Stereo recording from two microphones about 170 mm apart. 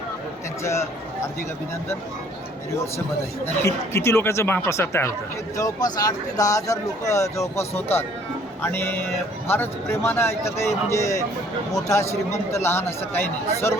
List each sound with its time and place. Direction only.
0.6 s speech: 15° left (ahead or behind)
3.4 s speech: 15° left (ahead or behind)